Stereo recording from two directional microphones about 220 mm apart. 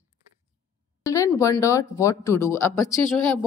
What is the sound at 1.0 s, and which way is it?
Speech, 15° left (ahead or behind).